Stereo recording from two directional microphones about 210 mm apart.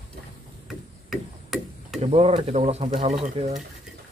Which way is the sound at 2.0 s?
30° right (ahead or behind).